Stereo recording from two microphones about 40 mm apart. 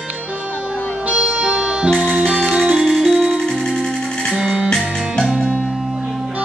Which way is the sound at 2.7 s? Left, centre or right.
Centre.